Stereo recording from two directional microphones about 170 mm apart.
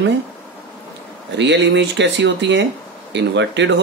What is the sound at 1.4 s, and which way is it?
Speech, 90° right.